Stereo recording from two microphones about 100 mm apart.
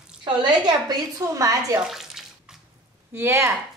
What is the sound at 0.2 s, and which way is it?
A woman's voice, 50° right (ahead or behind).